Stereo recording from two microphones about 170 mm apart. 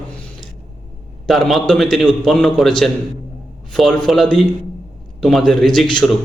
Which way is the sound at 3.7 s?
Centre (ahead or behind).